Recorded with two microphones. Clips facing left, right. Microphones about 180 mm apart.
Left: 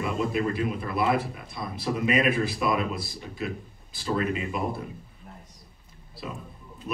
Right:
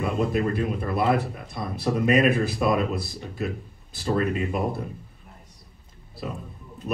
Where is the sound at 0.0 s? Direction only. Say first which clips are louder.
Right 2 dB; 50° right (ahead or behind).